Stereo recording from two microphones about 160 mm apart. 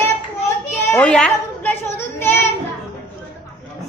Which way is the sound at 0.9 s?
10° left (ahead or behind).